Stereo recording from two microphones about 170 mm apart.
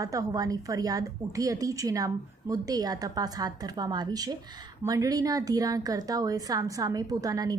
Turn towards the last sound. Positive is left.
turn(degrees=-20)  # may be behind; listen again after turning